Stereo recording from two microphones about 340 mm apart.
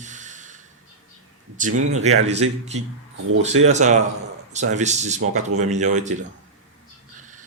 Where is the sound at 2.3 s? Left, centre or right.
Centre.